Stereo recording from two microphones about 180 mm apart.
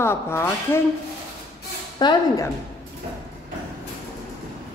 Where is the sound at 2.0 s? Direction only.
20° left (ahead or behind).